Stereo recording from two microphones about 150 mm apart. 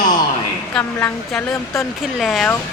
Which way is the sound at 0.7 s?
15° left (ahead or behind).